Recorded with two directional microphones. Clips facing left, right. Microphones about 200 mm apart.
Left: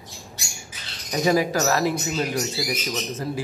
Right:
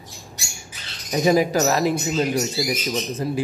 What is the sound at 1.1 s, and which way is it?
Speech, 20° right (ahead or behind).